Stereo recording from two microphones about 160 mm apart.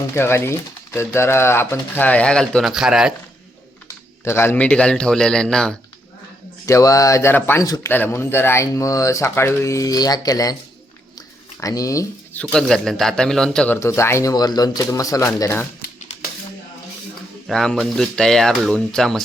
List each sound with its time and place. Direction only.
0.1 s speech: 15° left (ahead or behind); by 3.1 s 5° right (ahead or behind)
4.2 s speech: 15° left (ahead or behind)
6.7 s speech: 20° left (ahead or behind)
11.6 s speech: 20° left (ahead or behind)
12.4 s speech: 5° left (ahead or behind)
13.7 s speech: 15° left (ahead or behind)
17.4 s speech: 5° left (ahead or behind)